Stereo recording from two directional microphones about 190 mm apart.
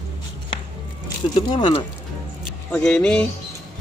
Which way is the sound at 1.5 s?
25° left (ahead or behind).